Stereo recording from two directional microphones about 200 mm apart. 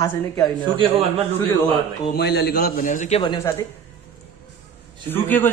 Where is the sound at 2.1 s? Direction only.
55° left (ahead or behind).